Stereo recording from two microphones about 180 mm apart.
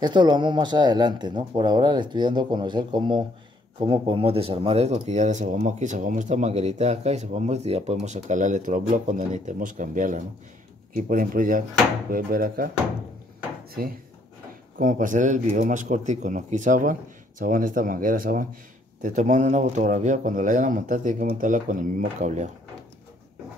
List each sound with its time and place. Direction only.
0.0 s speech: 25° right (ahead or behind); by 12.6 s 55° right (ahead or behind)
14.8 s speech: 45° right (ahead or behind)